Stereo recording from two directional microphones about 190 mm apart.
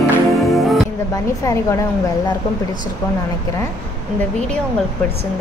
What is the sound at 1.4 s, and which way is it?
Speech, 15° left (ahead or behind).